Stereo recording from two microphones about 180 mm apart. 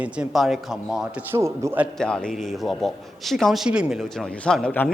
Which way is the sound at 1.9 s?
5° left (ahead or behind).